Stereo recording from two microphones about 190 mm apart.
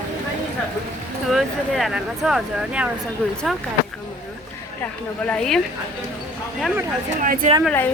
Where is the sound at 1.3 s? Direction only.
Centre (ahead or behind).